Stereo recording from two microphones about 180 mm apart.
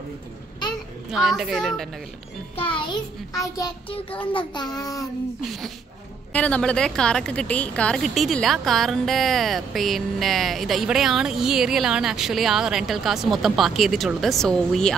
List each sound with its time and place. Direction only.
1.1 s a woman's voice: centre (ahead or behind)
2.5 s music: 30° left (ahead or behind)
3.3 s a child's voice: 20° left (ahead or behind)
6.3 s a woman's voice: 5° left (ahead or behind)